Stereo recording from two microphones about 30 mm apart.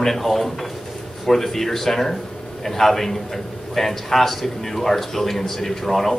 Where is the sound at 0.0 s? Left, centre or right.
Centre.